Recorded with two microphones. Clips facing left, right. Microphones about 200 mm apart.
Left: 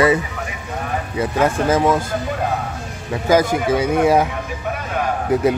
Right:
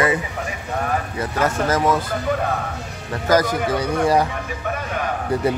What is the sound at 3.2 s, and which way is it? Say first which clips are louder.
Speech: left 2 dB; 25° left (ahead or behind).